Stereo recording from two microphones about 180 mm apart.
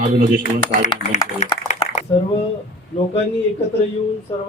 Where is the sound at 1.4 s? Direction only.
35° left (ahead or behind).